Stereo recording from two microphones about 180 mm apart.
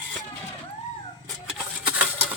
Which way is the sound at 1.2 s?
5° right (ahead or behind).